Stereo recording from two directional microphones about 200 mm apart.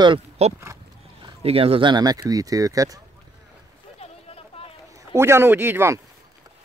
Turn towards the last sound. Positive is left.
turn(degrees=-10)  # may be behind; listen again after turning